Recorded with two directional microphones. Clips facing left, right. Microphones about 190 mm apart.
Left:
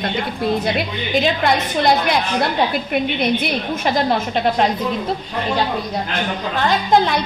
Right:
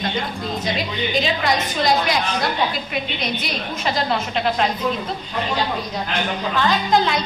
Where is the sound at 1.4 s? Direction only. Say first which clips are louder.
Left 4 dB; 55° left (ahead or behind).